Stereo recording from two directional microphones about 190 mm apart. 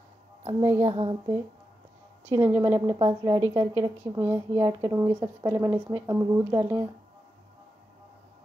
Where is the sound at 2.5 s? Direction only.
20° right (ahead or behind).